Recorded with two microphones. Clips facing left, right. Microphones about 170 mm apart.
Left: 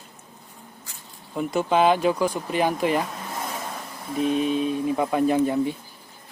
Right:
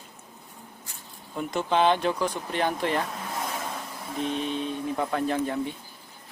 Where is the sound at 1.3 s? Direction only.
5° left (ahead or behind).